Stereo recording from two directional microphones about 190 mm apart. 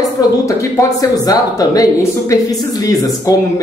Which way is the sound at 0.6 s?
15° left (ahead or behind).